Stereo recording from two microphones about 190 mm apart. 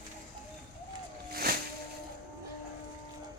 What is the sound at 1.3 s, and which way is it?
Music, 55° right (ahead or behind).